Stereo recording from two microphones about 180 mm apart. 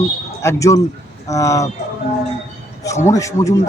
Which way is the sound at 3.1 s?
15° left (ahead or behind).